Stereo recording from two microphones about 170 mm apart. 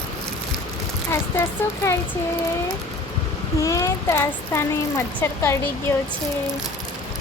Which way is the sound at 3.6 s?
20° left (ahead or behind).